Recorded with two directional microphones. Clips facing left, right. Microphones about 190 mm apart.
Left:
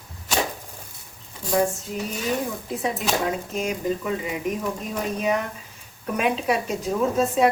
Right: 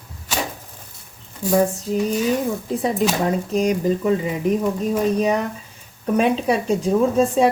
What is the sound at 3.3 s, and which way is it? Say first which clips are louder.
Speech: right 7 dB; 35° right (ahead or behind).